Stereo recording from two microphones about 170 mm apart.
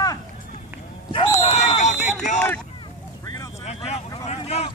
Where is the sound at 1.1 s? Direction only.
35° left (ahead or behind).